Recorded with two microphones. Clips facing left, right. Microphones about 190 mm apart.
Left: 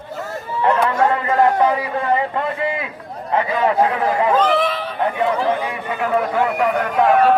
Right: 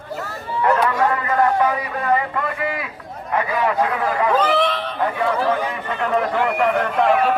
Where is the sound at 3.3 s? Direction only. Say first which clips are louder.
Left 3 dB; 25° left (ahead or behind).